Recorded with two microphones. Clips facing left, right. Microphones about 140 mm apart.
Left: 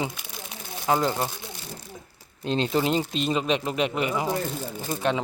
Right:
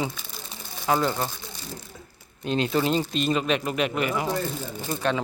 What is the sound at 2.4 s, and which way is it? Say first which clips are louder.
Speech: even; 25° left (ahead or behind).